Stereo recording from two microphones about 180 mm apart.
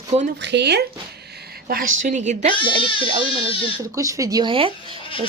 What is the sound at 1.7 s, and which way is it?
Speech, 50° right (ahead or behind).